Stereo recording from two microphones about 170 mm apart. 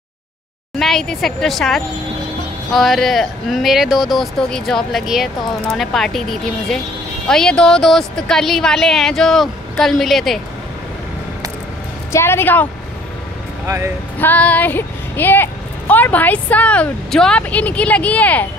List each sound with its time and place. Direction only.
0.7 s speech: centre (ahead or behind)
12.1 s speech: 15° left (ahead or behind)
13.7 s speech: 15° right (ahead or behind)
14.2 s speech: 10° left (ahead or behind)